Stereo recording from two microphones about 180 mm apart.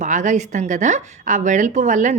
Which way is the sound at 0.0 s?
45° right (ahead or behind).